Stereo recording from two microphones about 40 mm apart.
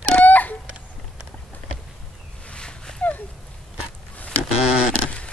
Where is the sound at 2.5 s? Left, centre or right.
Left.